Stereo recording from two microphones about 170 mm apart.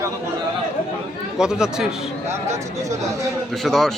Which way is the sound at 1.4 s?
5° right (ahead or behind).